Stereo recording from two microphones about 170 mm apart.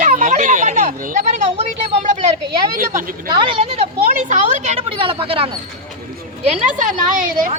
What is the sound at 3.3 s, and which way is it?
Speech, 30° right (ahead or behind).